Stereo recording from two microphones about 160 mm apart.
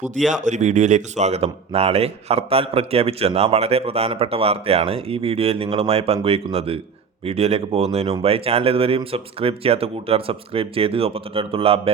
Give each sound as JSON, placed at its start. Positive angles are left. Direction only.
{"t": 0.3, "sound": "speech", "side_deg": -50}